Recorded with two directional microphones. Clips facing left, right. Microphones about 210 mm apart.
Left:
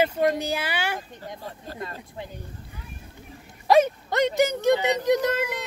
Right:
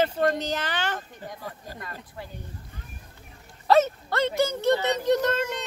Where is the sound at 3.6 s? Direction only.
15° left (ahead or behind).